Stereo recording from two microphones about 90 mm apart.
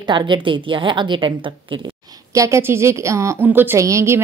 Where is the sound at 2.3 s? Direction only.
35° right (ahead or behind).